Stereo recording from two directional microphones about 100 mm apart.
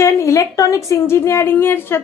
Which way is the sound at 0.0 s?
30° left (ahead or behind).